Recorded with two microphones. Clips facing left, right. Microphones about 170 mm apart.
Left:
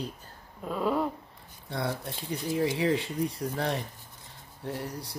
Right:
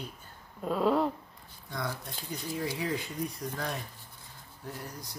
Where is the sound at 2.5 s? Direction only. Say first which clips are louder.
Left 7 dB; 30° left (ahead or behind).